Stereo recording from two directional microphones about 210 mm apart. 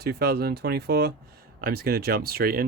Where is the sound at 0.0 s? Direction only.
50° right (ahead or behind).